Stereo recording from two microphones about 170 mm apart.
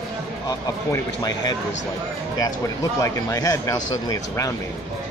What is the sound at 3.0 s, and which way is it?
Speech, 20° left (ahead or behind).